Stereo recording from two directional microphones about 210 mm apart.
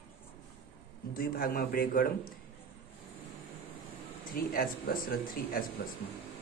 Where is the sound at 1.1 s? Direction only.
45° left (ahead or behind).